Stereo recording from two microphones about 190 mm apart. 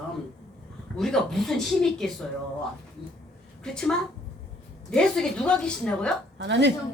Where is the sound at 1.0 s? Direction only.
Centre (ahead or behind).